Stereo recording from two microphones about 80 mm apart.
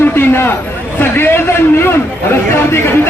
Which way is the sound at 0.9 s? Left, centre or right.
Left.